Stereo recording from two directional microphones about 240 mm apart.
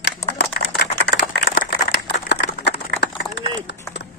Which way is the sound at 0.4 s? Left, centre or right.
Left.